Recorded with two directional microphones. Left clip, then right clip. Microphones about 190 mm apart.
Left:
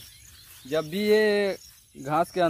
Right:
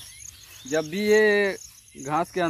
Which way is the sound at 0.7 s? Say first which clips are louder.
Right 1 dB; 45° left (ahead or behind).